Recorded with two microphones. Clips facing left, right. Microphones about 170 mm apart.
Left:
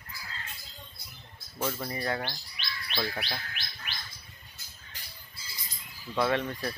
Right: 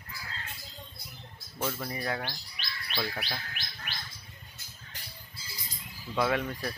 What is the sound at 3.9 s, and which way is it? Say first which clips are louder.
Bird: right 1 dB; 50° right (ahead or behind).